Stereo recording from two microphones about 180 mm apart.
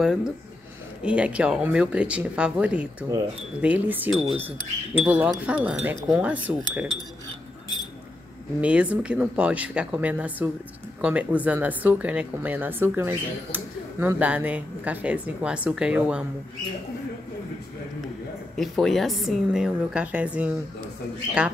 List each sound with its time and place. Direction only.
0.0 s a woman's voice: 5° right (ahead or behind)
8.5 s a woman's voice: 10° right (ahead or behind)
18.6 s a woman's voice: centre (ahead or behind)